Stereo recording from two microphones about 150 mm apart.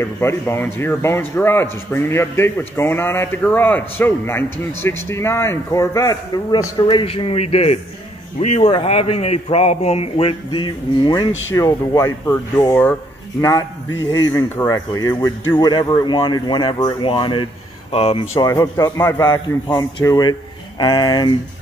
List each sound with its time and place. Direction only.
0.0 s a man's voice: 15° left (ahead or behind); by 18.2 s 40° left (ahead or behind)
18.3 s a man's voice: 20° left (ahead or behind)